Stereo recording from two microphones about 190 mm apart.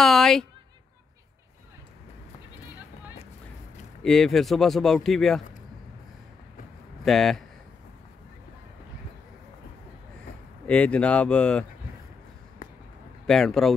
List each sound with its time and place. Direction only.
0.0 s a sound: centre (ahead or behind)
4.0 s speech: centre (ahead or behind)
7.1 s speech: centre (ahead or behind)
10.7 s speech: 5° left (ahead or behind)
12.6 s a sound: 45° left (ahead or behind)
13.3 s speech: centre (ahead or behind)